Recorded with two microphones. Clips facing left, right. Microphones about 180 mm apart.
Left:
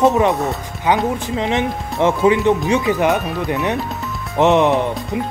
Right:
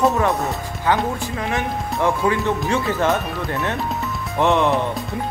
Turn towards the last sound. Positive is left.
turn(degrees=20)  # may be behind; listen again after turning